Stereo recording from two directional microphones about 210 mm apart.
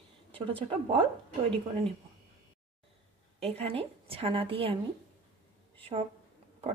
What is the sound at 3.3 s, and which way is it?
Speech, 30° right (ahead or behind).